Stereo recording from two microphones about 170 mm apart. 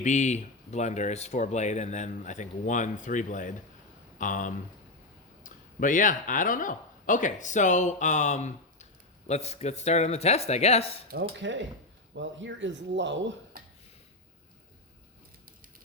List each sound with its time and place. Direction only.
0.0 s speech: 45° left (ahead or behind)
11.1 s speech: 85° right